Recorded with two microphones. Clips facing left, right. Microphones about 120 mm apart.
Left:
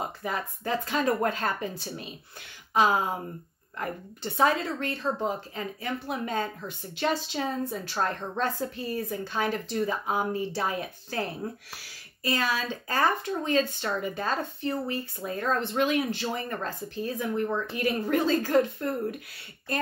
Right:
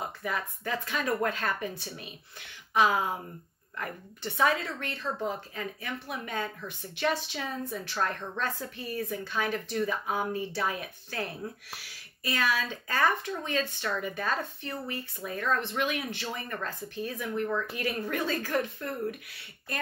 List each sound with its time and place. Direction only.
0.0 s a woman's voice: 25° left (ahead or behind)